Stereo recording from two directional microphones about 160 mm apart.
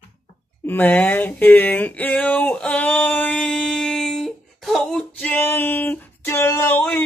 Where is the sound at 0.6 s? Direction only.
10° left (ahead or behind).